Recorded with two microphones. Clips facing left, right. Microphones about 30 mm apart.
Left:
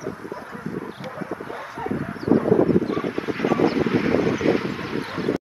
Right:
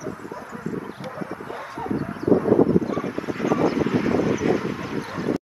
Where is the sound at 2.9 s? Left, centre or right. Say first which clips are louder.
Left 2 dB; left.